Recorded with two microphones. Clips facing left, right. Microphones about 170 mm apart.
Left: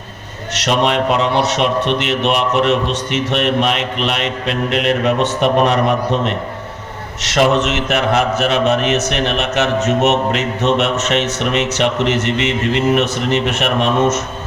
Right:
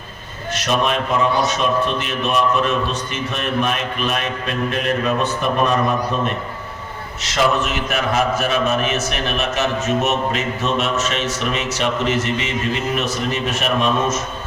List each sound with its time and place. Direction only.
0.5 s a man's voice: 75° left (ahead or behind)